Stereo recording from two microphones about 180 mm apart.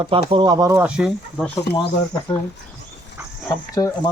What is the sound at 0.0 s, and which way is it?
Speech, 30° right (ahead or behind).